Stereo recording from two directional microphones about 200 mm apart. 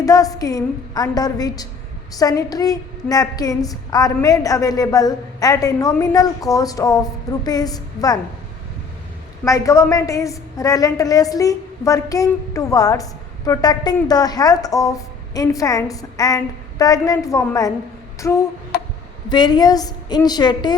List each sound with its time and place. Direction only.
0.0 s a woman's voice: 15° left (ahead or behind)
9.4 s a woman's voice: 15° left (ahead or behind)